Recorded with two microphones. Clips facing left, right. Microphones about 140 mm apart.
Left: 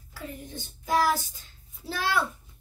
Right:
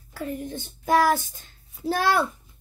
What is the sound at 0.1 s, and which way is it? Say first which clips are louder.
A child's voice: right 8 dB; 55° right (ahead or behind).